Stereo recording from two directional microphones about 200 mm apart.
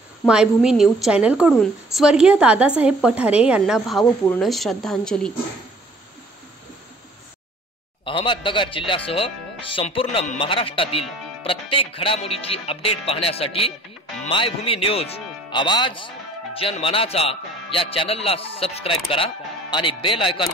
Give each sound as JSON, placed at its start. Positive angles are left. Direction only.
{"t": 0.3, "sound": "a woman's voice", "side_deg": -5}
{"t": 8.0, "sound": "speech", "side_deg": 25}